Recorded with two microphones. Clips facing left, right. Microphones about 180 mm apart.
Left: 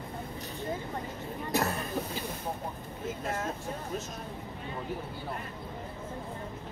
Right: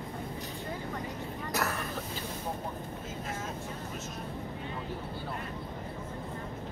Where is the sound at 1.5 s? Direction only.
30° left (ahead or behind).